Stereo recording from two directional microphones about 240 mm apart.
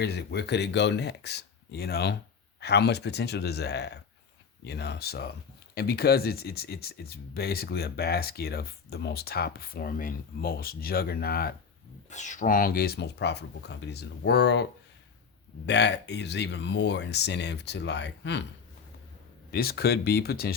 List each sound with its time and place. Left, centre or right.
0.0 s speech: left
19.5 s speech: left